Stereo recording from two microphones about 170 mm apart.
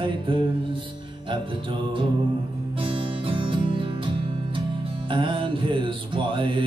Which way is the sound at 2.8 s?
30° right (ahead or behind).